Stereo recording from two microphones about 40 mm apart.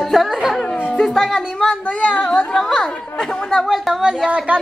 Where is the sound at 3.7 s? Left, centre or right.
Centre.